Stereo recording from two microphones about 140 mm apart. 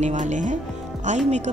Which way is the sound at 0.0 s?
60° right (ahead or behind).